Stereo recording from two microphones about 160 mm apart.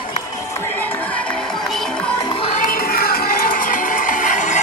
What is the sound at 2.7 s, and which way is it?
Music, 70° left (ahead or behind).